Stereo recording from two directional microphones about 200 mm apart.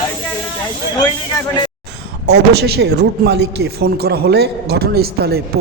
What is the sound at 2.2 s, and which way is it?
A man's voice, 55° right (ahead or behind).